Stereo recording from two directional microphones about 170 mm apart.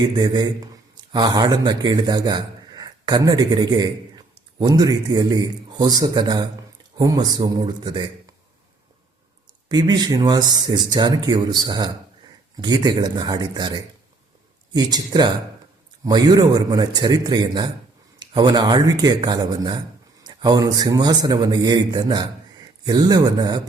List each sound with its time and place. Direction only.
0.0 s a man's voice: 25° right (ahead or behind)
9.6 s speech: 25° right (ahead or behind)